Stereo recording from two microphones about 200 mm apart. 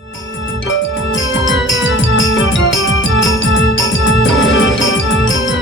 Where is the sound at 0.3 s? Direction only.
70° left (ahead or behind).